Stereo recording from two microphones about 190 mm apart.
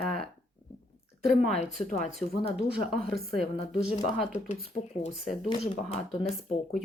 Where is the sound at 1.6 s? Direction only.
35° left (ahead or behind).